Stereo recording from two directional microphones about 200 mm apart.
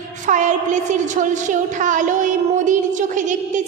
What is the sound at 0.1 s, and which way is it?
A woman's voice, 40° right (ahead or behind).